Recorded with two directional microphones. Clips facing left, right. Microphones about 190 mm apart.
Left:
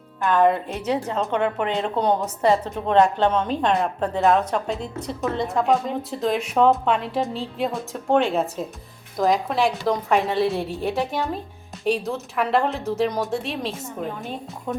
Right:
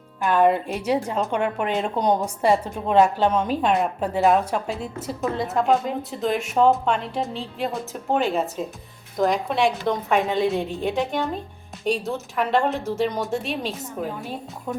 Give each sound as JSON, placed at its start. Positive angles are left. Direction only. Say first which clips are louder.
{"t": 0.2, "sound": "a woman's voice", "louder": "even", "side_deg": -10}